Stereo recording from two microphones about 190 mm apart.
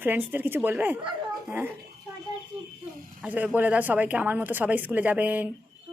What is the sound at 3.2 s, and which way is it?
Speech, 5° right (ahead or behind).